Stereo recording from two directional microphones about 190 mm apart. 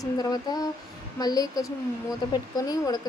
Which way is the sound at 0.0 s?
20° left (ahead or behind).